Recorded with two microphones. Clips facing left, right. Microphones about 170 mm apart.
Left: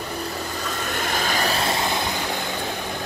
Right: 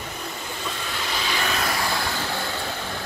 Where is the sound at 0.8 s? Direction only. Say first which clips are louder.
Left 4 dB; 50° left (ahead or behind); by 2.5 s 15° left (ahead or behind).